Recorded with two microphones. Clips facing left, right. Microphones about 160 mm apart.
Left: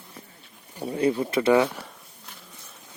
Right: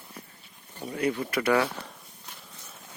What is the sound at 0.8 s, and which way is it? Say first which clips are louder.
Speech: left 5 dB; 30° left (ahead or behind).